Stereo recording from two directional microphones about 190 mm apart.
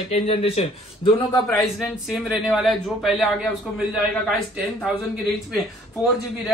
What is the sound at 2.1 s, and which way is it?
Speech, centre (ahead or behind).